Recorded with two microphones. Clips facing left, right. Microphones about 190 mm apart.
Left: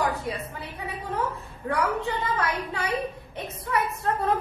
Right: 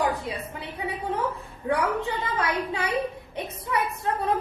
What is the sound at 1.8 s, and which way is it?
A woman's voice, 15° right (ahead or behind).